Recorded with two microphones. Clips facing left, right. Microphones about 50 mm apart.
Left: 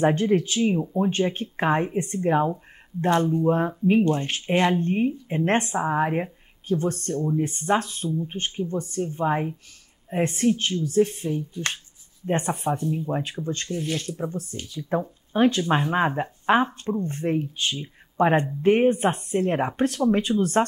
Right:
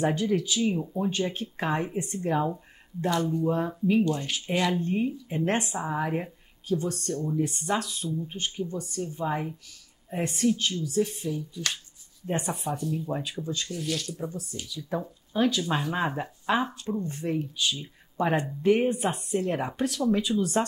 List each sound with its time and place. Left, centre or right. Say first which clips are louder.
0.0 s speech: left 5 dB; left
0.7 s speech: left 5 dB; left
10.1 s speech: left 4 dB; left